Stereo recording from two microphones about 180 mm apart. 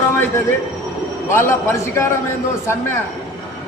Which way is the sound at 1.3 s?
15° left (ahead or behind).